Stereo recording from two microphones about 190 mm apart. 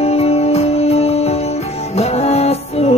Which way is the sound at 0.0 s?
30° left (ahead or behind).